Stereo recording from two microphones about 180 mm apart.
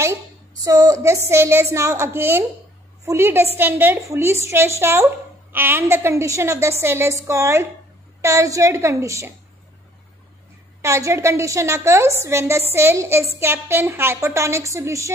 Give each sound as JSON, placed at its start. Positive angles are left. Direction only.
{"t": 0.7, "sound": "a woman's voice", "side_deg": -20}
{"t": 10.8, "sound": "a woman's voice", "side_deg": -15}